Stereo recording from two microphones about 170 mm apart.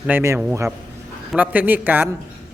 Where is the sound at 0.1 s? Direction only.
15° right (ahead or behind).